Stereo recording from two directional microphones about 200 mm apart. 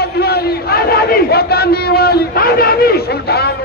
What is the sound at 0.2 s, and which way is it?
Battle cry, 50° left (ahead or behind).